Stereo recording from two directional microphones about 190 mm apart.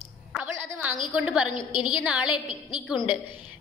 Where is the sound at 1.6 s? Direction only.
25° left (ahead or behind).